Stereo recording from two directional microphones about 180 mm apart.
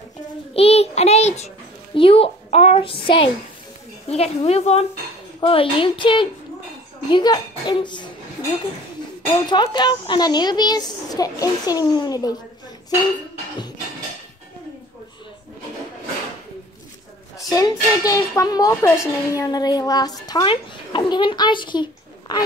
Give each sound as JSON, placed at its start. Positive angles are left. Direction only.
{"t": 0.6, "sound": "child singing", "side_deg": 35}
{"t": 2.0, "sound": "a sound", "side_deg": 30}
{"t": 4.1, "sound": "speech", "side_deg": 35}
{"t": 9.2, "sound": "speech", "side_deg": 25}
{"t": 17.4, "sound": "speech", "side_deg": 20}